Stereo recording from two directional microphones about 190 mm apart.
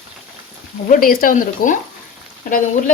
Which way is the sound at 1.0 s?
45° left (ahead or behind).